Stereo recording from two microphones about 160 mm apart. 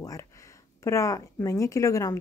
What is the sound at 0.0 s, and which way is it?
Speech, 20° left (ahead or behind).